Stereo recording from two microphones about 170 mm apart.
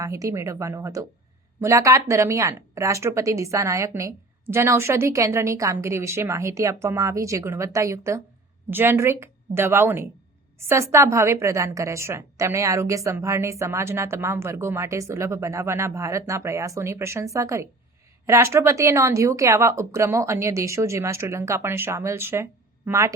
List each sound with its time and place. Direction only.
0.0 s a woman's voice: 20° right (ahead or behind)